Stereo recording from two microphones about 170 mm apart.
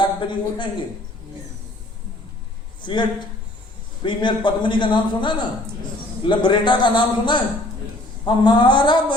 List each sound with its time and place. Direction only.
0.0 s a man's voice: 30° left (ahead or behind)
2.8 s a man's voice: 25° left (ahead or behind)